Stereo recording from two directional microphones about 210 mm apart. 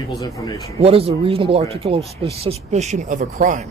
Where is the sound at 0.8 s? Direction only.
25° right (ahead or behind).